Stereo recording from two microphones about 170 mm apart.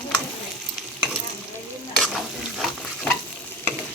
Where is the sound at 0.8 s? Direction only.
Centre (ahead or behind).